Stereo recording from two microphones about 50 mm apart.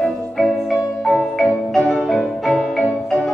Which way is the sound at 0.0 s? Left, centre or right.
Centre.